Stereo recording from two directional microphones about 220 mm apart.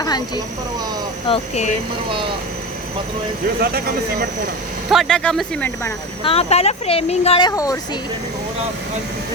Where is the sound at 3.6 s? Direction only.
45° right (ahead or behind).